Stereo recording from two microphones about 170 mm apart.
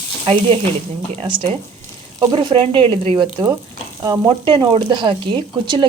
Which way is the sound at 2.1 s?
25° right (ahead or behind).